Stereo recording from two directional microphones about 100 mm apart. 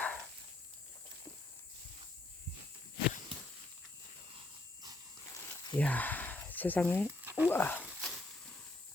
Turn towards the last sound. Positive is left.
turn(degrees=20)  # may be behind; listen again after turning